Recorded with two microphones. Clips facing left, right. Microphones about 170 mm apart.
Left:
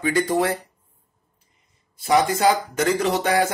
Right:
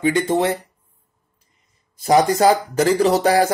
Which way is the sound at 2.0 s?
35° right (ahead or behind).